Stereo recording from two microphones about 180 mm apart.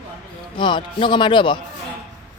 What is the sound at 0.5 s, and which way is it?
Speech, 25° left (ahead or behind).